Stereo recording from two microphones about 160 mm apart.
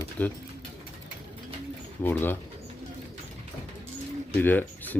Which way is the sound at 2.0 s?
15° left (ahead or behind).